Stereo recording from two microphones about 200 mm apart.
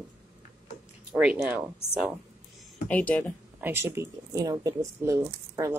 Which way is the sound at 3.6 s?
10° right (ahead or behind).